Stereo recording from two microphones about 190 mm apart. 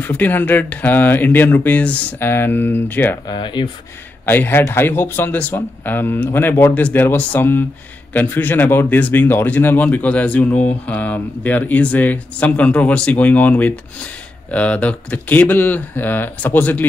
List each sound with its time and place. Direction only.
0.0 s speech: 10° left (ahead or behind)
3.3 s speech: 25° left (ahead or behind)
4.3 s speech: 10° left (ahead or behind)